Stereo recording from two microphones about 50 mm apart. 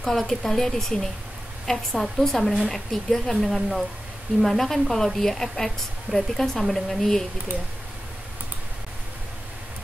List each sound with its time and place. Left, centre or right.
0.0 s a woman's voice: centre